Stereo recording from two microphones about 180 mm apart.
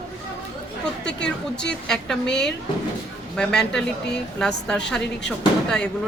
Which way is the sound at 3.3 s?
5° left (ahead or behind).